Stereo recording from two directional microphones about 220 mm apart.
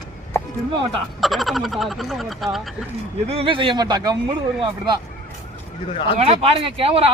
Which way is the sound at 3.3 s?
25° right (ahead or behind).